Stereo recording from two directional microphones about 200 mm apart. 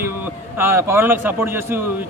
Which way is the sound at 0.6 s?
15° right (ahead or behind).